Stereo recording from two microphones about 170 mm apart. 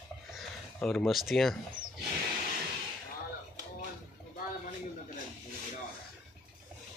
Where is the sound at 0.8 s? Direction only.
5° left (ahead or behind).